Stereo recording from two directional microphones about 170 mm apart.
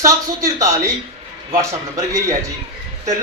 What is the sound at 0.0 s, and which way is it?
Speech, 15° right (ahead or behind).